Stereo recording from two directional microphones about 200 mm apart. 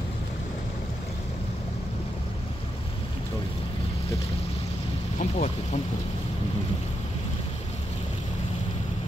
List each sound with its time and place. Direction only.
5.2 s speech: 35° left (ahead or behind)